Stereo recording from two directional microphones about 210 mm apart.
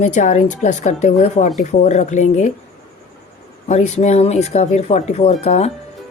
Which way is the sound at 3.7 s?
30° left (ahead or behind).